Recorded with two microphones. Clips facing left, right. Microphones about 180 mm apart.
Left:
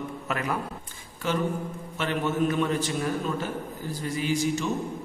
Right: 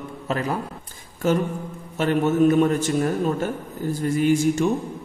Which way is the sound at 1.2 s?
45° right (ahead or behind).